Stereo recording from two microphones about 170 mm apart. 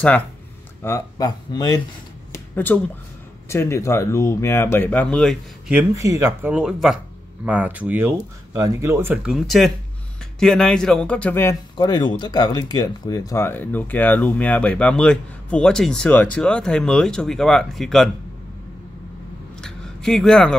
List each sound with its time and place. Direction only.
0.8 s speech: 20° left (ahead or behind)
2.5 s speech: 10° left (ahead or behind)
5.8 s speech: 15° right (ahead or behind); by 11.5 s 10° left (ahead or behind)
11.7 s speech: 25° left (ahead or behind); by 18.1 s centre (ahead or behind)
19.6 s a sound: centre (ahead or behind)